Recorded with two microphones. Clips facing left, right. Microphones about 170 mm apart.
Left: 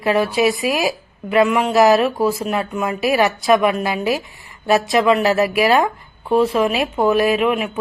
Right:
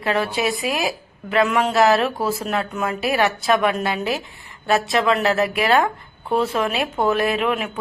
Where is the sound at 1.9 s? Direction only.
Centre (ahead or behind).